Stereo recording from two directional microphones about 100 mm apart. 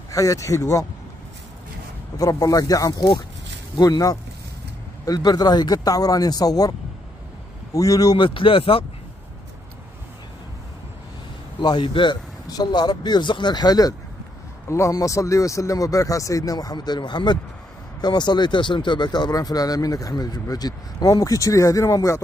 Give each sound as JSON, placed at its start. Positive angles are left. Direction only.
{"t": 0.1, "sound": "speech", "side_deg": 35}
{"t": 2.1, "sound": "speech", "side_deg": 35}
{"t": 7.7, "sound": "speech", "side_deg": 35}
{"t": 8.2, "sound": "speech", "side_deg": 60}
{"t": 11.6, "sound": "speech", "side_deg": 55}
{"t": 12.4, "sound": "speech", "side_deg": 40}